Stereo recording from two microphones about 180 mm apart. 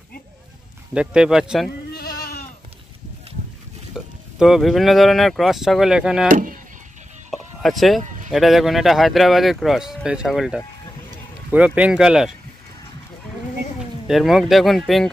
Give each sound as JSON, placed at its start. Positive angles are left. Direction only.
{"t": 0.9, "sound": "speech", "side_deg": -5}
{"t": 1.9, "sound": "sheep", "side_deg": 60}
{"t": 3.9, "sound": "speech", "side_deg": -5}
{"t": 6.2, "sound": "speech", "side_deg": -45}
{"t": 7.2, "sound": "a sound", "side_deg": 0}
{"t": 8.3, "sound": "speech", "side_deg": 0}
{"t": 14.0, "sound": "speech", "side_deg": 0}